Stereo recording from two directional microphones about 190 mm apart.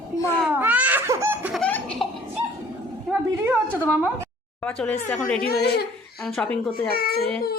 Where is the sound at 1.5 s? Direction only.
5° left (ahead or behind).